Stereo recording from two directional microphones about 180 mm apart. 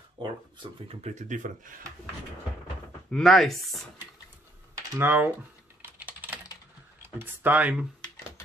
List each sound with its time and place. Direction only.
0.2 s speech: 30° right (ahead or behind); by 1.9 s 45° right (ahead or behind)
3.1 s speech: centre (ahead or behind)
4.9 s speech: 10° right (ahead or behind)
5.8 s typing: 10° right (ahead or behind)
7.0 s speech: 10° right (ahead or behind)